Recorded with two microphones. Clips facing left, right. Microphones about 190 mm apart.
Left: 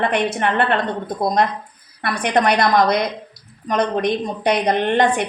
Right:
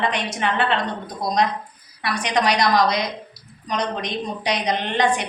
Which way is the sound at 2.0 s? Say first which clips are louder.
Left 3 dB; 55° left (ahead or behind).